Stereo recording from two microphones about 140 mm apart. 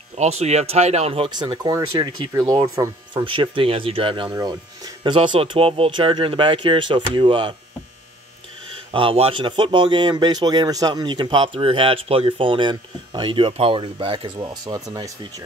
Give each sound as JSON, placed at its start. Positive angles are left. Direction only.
{"t": 0.2, "sound": "speech", "side_deg": -50}
{"t": 3.3, "sound": "speech", "side_deg": -40}
{"t": 4.3, "sound": "speech", "side_deg": -25}
{"t": 8.9, "sound": "speech", "side_deg": -40}